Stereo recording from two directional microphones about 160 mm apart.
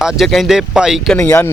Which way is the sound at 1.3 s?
15° left (ahead or behind).